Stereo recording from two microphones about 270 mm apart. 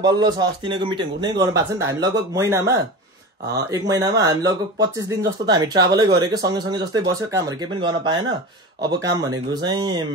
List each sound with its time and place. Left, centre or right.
0.0 s a man's voice: centre
3.9 s a man's voice: centre